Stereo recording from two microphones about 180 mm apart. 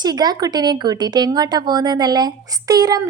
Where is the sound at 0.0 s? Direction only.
20° right (ahead or behind).